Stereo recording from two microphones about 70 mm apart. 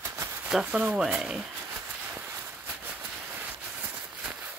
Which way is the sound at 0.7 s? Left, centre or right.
Centre.